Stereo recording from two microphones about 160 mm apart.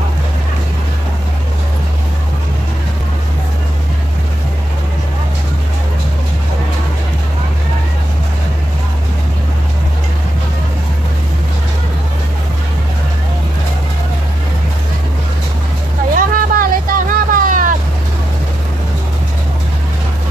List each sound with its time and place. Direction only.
16.2 s vehicle: 60° right (ahead or behind)